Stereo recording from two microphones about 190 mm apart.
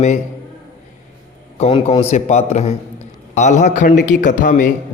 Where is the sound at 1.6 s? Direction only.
35° left (ahead or behind).